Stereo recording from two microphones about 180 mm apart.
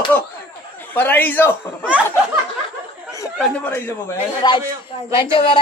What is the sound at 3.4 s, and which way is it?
Speech, 10° left (ahead or behind).